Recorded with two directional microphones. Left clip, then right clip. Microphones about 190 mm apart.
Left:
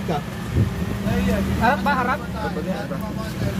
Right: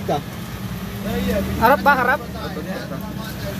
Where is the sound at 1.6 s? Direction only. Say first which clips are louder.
Right 6 dB; 50° right (ahead or behind).